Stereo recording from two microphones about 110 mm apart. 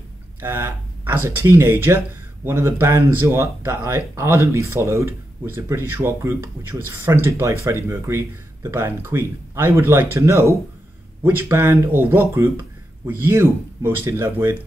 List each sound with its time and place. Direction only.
0.4 s speech: 20° right (ahead or behind)